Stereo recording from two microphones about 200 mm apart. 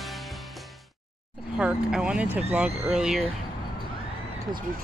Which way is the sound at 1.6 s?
5° right (ahead or behind).